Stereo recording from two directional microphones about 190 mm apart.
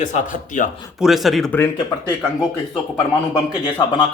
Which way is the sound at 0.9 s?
Centre (ahead or behind).